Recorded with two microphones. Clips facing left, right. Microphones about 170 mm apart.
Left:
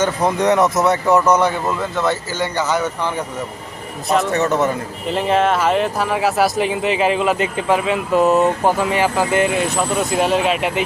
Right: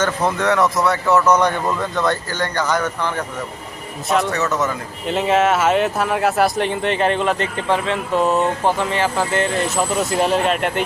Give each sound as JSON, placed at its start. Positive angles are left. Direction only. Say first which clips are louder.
{"t": 0.0, "sound": "speech", "louder": "left 2 dB", "side_deg": 10}
{"t": 4.3, "sound": "a man's voice", "louder": "left 3 dB", "side_deg": 30}
{"t": 5.0, "sound": "speech", "louder": "even", "side_deg": 0}
{"t": 9.7, "sound": "speech", "louder": "left 1 dB", "side_deg": 0}